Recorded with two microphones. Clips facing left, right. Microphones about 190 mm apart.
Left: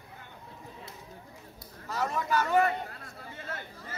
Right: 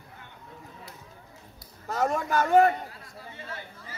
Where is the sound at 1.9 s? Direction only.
50° right (ahead or behind).